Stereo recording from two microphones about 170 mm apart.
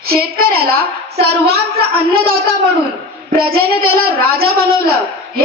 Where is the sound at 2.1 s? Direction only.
35° right (ahead or behind).